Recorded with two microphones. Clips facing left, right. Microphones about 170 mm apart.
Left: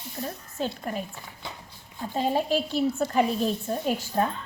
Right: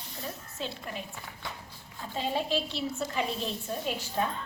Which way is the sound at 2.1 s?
45° left (ahead or behind).